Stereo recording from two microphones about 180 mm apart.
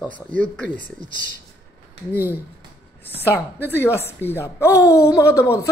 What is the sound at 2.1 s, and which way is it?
Speech, 10° right (ahead or behind).